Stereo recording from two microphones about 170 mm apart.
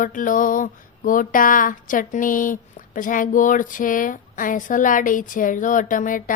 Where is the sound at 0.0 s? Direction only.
50° left (ahead or behind).